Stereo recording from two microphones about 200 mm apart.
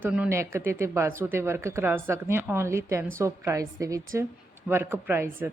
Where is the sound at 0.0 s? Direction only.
5° right (ahead or behind).